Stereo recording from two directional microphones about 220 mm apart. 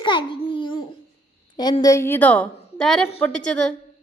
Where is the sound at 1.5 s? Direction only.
20° left (ahead or behind); by 3.8 s 5° left (ahead or behind).